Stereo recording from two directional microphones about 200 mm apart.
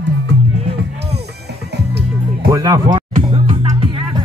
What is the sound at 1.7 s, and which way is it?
Music, 55° right (ahead or behind).